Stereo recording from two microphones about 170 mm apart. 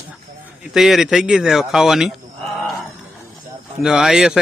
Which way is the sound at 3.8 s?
5° right (ahead or behind).